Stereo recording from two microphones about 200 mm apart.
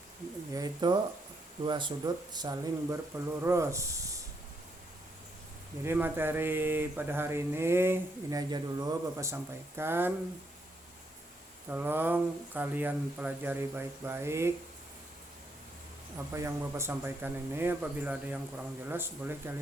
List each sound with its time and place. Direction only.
0.5 s speech: 20° right (ahead or behind)
5.8 s speech: 10° right (ahead or behind)
11.7 s speech: 10° right (ahead or behind)
16.1 s speech: 15° right (ahead or behind)